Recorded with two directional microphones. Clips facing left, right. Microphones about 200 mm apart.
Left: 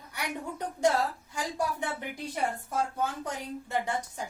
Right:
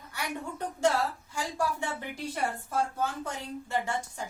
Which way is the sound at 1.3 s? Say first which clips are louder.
Even; 20° left (ahead or behind).